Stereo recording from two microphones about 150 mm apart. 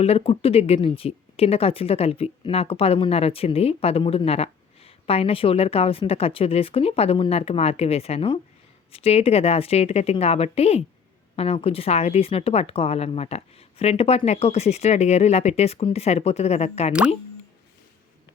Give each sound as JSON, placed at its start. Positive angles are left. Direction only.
{"t": 0.0, "sound": "speech", "side_deg": 40}